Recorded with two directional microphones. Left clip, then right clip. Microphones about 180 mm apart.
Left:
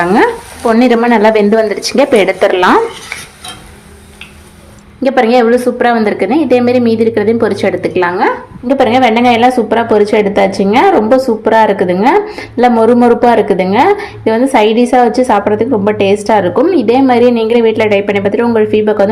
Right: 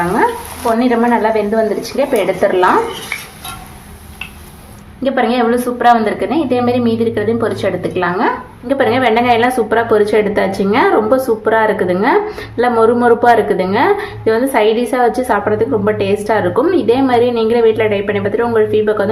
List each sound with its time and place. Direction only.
0.8 s speech: 55° left (ahead or behind)
5.0 s a woman's voice: 35° left (ahead or behind)